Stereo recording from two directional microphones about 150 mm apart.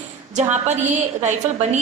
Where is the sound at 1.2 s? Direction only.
50° right (ahead or behind).